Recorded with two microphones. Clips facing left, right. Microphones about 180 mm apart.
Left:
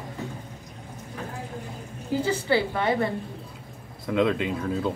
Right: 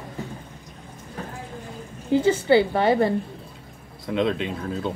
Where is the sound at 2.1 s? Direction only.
25° right (ahead or behind).